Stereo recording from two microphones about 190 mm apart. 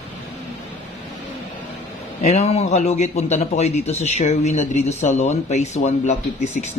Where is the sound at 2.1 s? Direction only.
40° left (ahead or behind).